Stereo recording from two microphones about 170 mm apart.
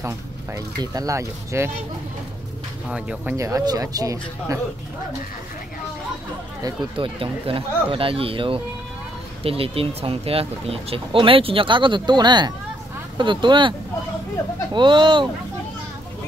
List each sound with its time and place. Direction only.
0.6 s speech: 20° right (ahead or behind)
2.9 s speech: 5° right (ahead or behind)
3.3 s speech: 20° right (ahead or behind)
6.6 s speech: 30° right (ahead or behind)